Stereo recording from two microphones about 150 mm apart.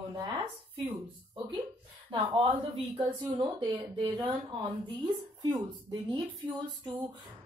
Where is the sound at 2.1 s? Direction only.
35° right (ahead or behind).